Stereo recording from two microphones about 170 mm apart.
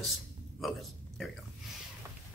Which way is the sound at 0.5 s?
Centre (ahead or behind).